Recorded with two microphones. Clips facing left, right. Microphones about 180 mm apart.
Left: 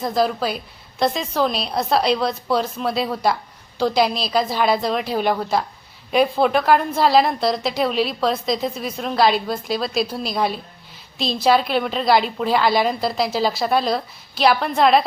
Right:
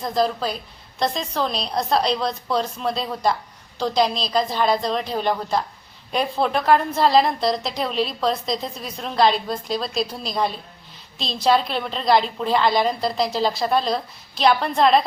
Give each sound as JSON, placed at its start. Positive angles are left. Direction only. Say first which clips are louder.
{"t": 0.0, "sound": "a woman's voice", "louder": "left 2 dB", "side_deg": 5}